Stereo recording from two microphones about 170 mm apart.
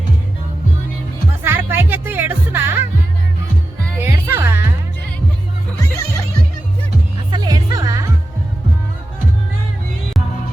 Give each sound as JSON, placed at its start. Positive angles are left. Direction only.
{"t": 1.5, "sound": "music", "side_deg": -15}
{"t": 4.0, "sound": "music", "side_deg": -15}
{"t": 7.3, "sound": "music", "side_deg": -25}